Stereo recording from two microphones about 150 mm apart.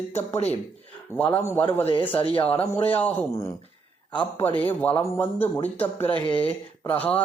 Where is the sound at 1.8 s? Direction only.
35° left (ahead or behind).